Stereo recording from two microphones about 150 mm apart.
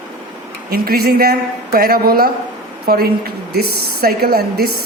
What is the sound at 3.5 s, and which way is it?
A woman's voice, 90° right.